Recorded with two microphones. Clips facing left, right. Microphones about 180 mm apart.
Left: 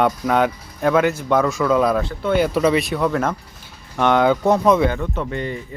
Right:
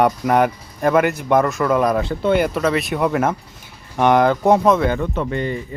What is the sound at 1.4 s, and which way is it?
Speech, centre (ahead or behind).